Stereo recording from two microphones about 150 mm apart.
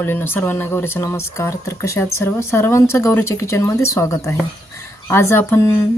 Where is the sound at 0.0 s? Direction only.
15° left (ahead or behind).